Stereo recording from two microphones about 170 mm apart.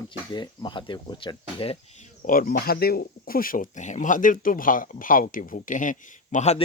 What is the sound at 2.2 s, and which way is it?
Speech, 55° left (ahead or behind).